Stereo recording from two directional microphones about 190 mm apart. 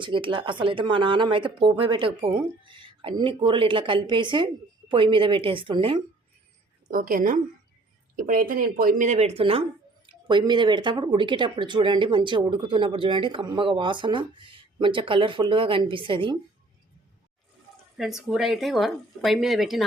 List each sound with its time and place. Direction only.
0.0 s speech: 25° right (ahead or behind)
6.9 s speech: 45° right (ahead or behind); by 16.4 s 25° right (ahead or behind)
17.9 s speech: centre (ahead or behind)